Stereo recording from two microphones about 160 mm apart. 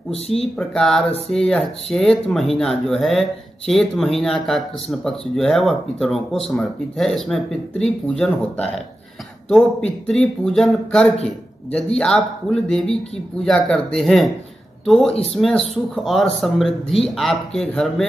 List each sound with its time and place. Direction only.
0.1 s speech: 40° left (ahead or behind)
0.6 s speech: centre (ahead or behind)
15.3 s speech: centre (ahead or behind)